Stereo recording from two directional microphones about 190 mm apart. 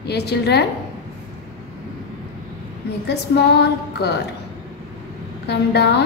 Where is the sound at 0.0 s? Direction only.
60° left (ahead or behind).